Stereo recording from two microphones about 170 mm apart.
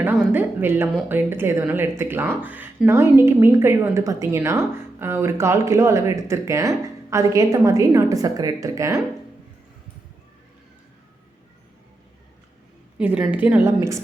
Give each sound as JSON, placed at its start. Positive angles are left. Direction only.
{"t": 0.0, "sound": "speech", "side_deg": -10}
{"t": 13.0, "sound": "speech", "side_deg": -5}